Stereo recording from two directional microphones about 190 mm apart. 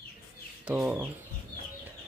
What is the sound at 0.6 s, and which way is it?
Speech, 5° right (ahead or behind).